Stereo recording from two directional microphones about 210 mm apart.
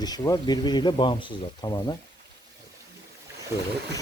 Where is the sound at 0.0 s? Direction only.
20° left (ahead or behind).